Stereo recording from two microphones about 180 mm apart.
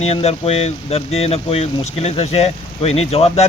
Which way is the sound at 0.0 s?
35° left (ahead or behind).